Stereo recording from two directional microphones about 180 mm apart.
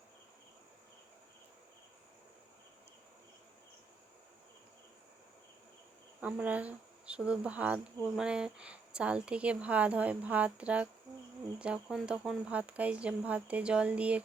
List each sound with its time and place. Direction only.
6.1 s speech: 10° right (ahead or behind)